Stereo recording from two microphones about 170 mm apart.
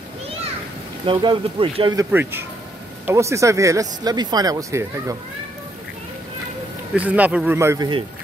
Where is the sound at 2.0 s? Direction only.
10° right (ahead or behind).